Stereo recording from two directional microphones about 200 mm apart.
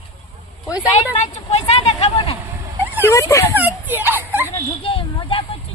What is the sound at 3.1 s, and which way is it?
Speech, 15° left (ahead or behind).